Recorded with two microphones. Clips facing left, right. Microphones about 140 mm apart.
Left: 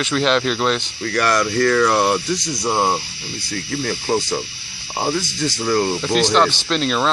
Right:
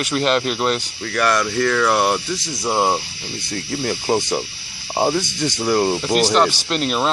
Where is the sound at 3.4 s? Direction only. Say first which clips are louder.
Even; 25° right (ahead or behind).